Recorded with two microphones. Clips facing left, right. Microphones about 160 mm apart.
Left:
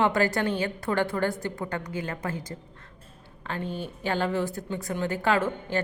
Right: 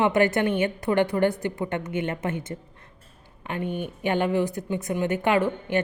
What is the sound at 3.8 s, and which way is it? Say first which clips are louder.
A woman's voice: right 3 dB; 20° right (ahead or behind).